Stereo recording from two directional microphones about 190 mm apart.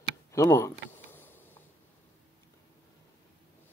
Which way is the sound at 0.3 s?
15° left (ahead or behind).